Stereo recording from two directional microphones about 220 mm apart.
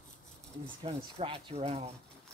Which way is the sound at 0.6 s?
25° right (ahead or behind).